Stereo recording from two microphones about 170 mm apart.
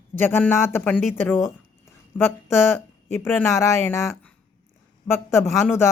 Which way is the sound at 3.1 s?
15° left (ahead or behind).